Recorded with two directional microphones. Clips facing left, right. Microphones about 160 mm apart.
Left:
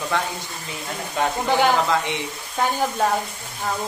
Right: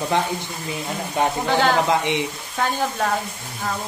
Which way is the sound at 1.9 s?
20° right (ahead or behind).